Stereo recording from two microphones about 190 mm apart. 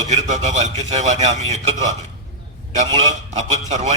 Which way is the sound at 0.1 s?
40° right (ahead or behind).